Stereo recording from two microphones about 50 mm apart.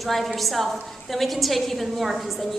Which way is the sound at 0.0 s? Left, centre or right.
Centre.